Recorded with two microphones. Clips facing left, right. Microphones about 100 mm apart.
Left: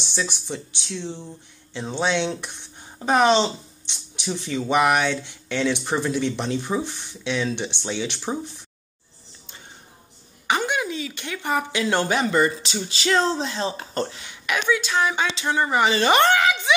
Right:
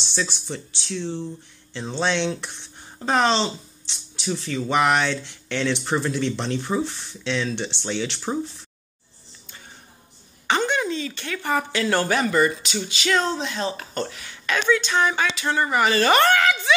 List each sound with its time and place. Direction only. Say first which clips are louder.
0.1 s speech: even; 15° left (ahead or behind)
3.0 s a sound: left 3 dB; 15° left (ahead or behind)
4.4 s speech: left 1 dB; 20° left (ahead or behind)
10.4 s speech: right 1 dB; 10° left (ahead or behind)
15.4 s a woman's voice: left 1 dB; 15° left (ahead or behind)